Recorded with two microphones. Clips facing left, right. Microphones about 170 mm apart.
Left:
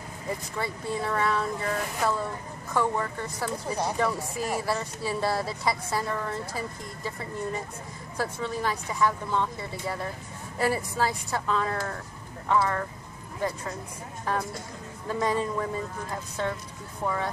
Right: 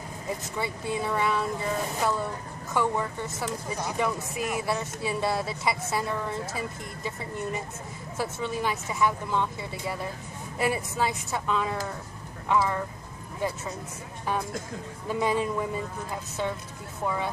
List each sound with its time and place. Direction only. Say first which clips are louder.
0.6 s speech: right 1 dB; 5° right (ahead or behind)
4.4 s speech: even; 30° left (ahead or behind)
4.6 s speech: even; centre (ahead or behind)
15.0 s speech: right 1 dB; 5° right (ahead or behind)